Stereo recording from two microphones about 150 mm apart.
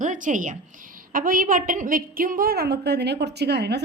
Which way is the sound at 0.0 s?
55° right (ahead or behind).